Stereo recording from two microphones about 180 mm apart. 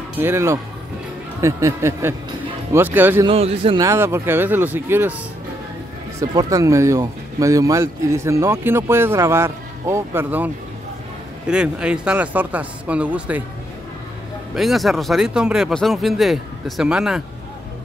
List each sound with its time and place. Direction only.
0.2 s speech: 15° right (ahead or behind)
3.3 s a man's voice: 30° right (ahead or behind)
3.8 s speech: 15° right (ahead or behind)
6.1 s speech: 20° right (ahead or behind)
14.5 s speech: centre (ahead or behind)